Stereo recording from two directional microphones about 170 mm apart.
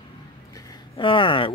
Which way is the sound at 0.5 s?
20° left (ahead or behind).